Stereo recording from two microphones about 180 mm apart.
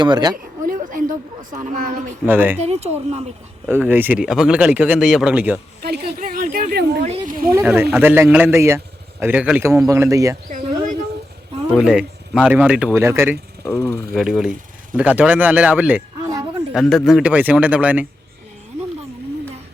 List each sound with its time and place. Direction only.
0.0 s speech: 25° right (ahead or behind)
0.6 s a sound: 45° right (ahead or behind)
2.2 s speech: 10° right (ahead or behind)
2.6 s speech: 35° right (ahead or behind)
3.7 s speech: 10° right (ahead or behind)
5.8 s a sound: 55° right (ahead or behind)
7.0 s a sound: 45° right (ahead or behind)
7.6 s speech: 5° right (ahead or behind)
10.5 s a sound: 45° right (ahead or behind)
11.7 s speech: 5° right (ahead or behind)
13.7 s speech: 15° left (ahead or behind)
14.1 s speech: centre (ahead or behind)